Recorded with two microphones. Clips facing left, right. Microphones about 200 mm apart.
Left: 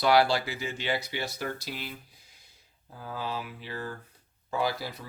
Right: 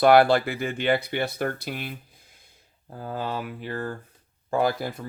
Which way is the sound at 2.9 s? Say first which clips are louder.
Right 5 dB; 50° right (ahead or behind).